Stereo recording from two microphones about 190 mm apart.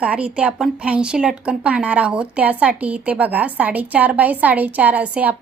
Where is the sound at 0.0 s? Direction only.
5° right (ahead or behind).